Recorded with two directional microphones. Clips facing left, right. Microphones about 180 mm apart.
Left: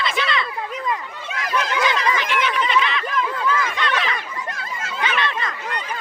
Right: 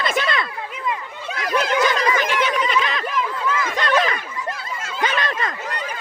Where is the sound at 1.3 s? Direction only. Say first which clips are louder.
Right 3 dB; 35° right (ahead or behind).